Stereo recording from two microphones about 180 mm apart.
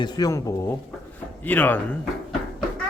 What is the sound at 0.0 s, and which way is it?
Speech, 20° left (ahead or behind).